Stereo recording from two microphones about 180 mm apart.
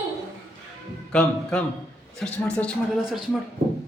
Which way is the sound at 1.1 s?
5° left (ahead or behind).